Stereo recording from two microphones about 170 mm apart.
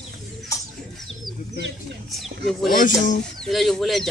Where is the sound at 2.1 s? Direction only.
Centre (ahead or behind).